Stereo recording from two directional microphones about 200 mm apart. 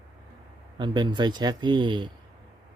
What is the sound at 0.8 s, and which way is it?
Speech, 25° right (ahead or behind).